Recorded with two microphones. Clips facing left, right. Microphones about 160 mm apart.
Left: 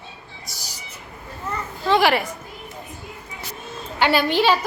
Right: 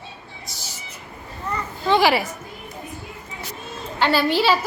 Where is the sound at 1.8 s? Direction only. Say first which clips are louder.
Even; centre (ahead or behind).